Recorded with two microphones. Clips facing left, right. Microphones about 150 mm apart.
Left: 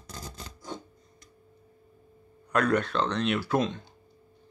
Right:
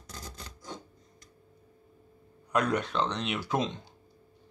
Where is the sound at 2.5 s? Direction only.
15° right (ahead or behind).